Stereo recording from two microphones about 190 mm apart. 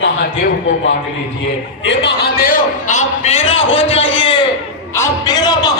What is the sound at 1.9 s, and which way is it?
A man's voice, 60° left (ahead or behind).